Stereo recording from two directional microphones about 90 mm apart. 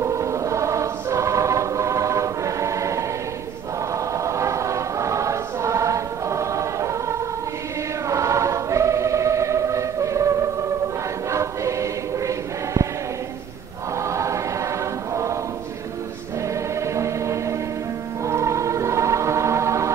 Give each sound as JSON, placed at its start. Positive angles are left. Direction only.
{"t": 0.0, "sound": "choir", "side_deg": -35}
{"t": 4.2, "sound": "choir", "side_deg": -35}
{"t": 11.3, "sound": "choir", "side_deg": -35}
{"t": 14.1, "sound": "choir", "side_deg": -35}
{"t": 16.8, "sound": "music", "side_deg": -35}
{"t": 18.2, "sound": "choir", "side_deg": -35}